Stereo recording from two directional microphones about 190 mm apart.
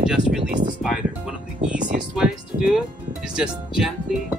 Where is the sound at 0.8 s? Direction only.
Centre (ahead or behind).